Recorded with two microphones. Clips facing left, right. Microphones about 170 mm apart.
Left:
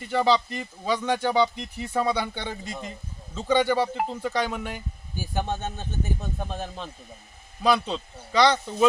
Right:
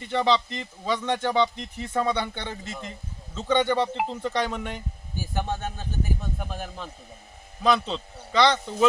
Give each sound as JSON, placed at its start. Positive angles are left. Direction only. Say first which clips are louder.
{"t": 0.1, "sound": "speech", "louder": "left 1 dB", "side_deg": 5}
{"t": 7.6, "sound": "speech", "louder": "even", "side_deg": 10}